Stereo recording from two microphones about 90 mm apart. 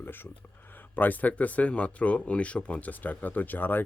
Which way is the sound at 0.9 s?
20° left (ahead or behind).